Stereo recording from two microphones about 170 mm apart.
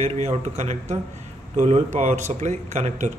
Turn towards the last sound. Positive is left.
turn(degrees=-40)  # may be behind; listen again after turning